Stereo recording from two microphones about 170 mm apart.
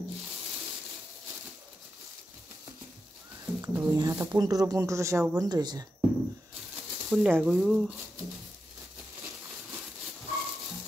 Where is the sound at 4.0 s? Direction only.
20° right (ahead or behind).